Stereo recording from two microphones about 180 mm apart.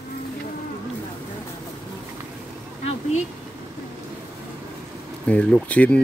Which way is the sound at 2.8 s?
35° left (ahead or behind).